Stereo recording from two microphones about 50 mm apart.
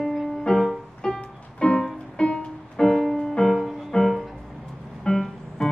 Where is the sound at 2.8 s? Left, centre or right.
Centre.